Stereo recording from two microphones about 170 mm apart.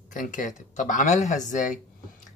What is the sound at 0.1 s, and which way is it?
Speech, 50° left (ahead or behind).